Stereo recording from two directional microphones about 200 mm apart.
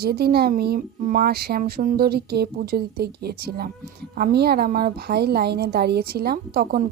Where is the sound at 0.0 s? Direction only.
50° right (ahead or behind).